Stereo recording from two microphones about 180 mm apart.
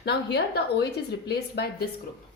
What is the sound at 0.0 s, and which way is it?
A woman's voice, 65° left (ahead or behind).